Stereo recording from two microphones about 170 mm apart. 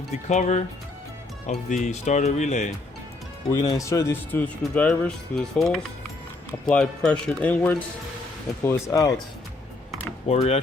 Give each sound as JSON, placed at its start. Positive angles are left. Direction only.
{"t": 0.3, "sound": "speech", "side_deg": 45}
{"t": 3.5, "sound": "speech", "side_deg": 25}
{"t": 8.6, "sound": "speech", "side_deg": 20}
{"t": 10.2, "sound": "speech", "side_deg": 40}